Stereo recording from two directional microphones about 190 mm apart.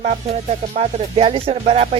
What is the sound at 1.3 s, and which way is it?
Music, 30° right (ahead or behind).